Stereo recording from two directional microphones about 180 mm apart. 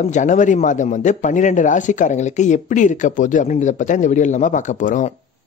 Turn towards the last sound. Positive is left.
turn(degrees=45)  # may be behind; listen again after turning